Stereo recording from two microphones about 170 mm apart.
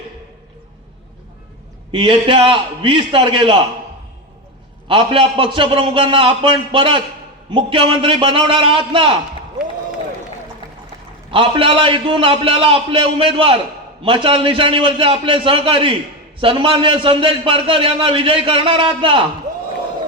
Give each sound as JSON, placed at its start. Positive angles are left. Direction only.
{"t": 1.9, "sound": "a man's voice", "side_deg": -30}
{"t": 4.9, "sound": "a man's voice", "side_deg": -30}
{"t": 11.3, "sound": "a man's voice", "side_deg": -30}